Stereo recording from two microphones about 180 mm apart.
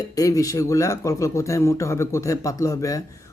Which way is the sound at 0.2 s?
20° left (ahead or behind).